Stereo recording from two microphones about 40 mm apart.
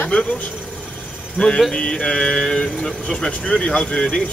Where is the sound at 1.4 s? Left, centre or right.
Left.